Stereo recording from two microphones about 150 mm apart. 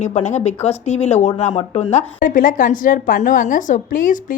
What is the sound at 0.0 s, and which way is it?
A woman's voice, 50° left (ahead or behind).